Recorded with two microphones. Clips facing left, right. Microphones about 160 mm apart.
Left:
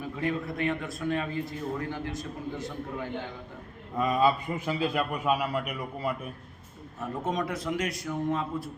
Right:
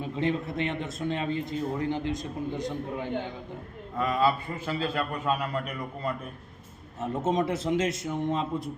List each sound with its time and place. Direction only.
0.0 s a man's voice: 25° right (ahead or behind)
3.9 s a man's voice: 20° left (ahead or behind)
7.0 s a man's voice: 25° right (ahead or behind)